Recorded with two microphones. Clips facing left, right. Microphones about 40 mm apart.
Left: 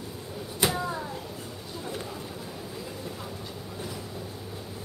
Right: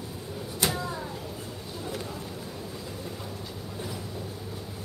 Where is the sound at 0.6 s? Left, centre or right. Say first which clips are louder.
Left 2 dB; centre.